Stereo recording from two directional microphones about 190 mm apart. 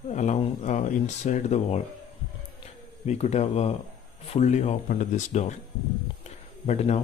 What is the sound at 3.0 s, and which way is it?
Speech, 35° left (ahead or behind).